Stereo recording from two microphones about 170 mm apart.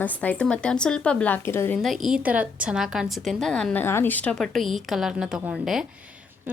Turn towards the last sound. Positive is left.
turn(degrees=-5)  # may be behind; listen again after turning